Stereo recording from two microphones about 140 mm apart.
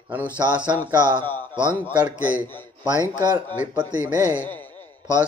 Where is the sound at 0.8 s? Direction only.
15° left (ahead or behind).